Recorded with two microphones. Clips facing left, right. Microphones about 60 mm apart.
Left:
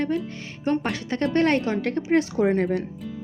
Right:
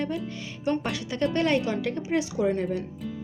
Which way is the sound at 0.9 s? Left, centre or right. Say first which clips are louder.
Left 3 dB; left.